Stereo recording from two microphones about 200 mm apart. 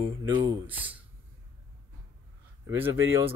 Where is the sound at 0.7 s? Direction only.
10° right (ahead or behind).